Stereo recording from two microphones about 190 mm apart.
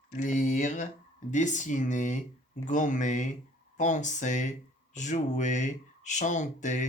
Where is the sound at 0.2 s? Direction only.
40° left (ahead or behind).